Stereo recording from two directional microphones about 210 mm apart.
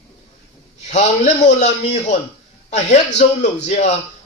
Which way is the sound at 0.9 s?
35° left (ahead or behind).